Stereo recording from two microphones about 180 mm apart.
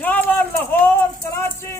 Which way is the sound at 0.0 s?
10° left (ahead or behind).